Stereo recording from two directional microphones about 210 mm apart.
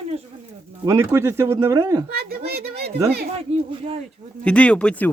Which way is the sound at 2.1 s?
45° right (ahead or behind).